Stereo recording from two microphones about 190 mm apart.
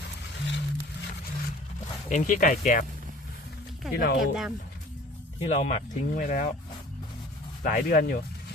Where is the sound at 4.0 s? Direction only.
55° left (ahead or behind).